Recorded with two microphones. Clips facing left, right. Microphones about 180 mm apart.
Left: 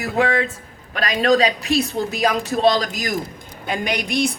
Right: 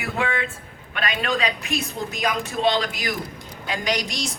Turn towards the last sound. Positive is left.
turn(degrees=60)  # may be behind; listen again after turning